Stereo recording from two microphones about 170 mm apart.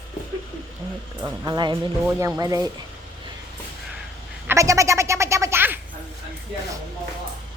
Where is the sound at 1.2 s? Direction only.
25° right (ahead or behind).